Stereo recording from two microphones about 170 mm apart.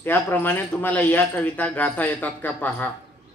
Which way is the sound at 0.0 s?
10° left (ahead or behind).